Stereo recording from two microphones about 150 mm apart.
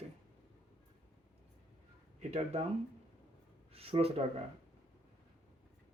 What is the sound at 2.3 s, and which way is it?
Speech, 45° right (ahead or behind).